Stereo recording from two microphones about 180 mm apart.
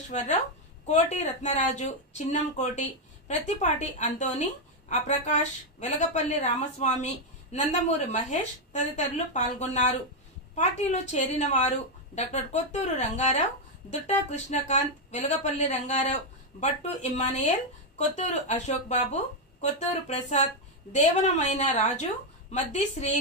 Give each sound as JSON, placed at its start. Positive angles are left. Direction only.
{"t": 0.1, "sound": "a woman's voice", "side_deg": 40}